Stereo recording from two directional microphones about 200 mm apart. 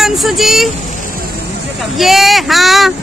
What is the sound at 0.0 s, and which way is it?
Speech, centre (ahead or behind).